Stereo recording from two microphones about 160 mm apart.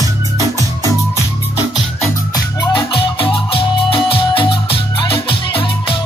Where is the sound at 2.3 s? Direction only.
30° left (ahead or behind).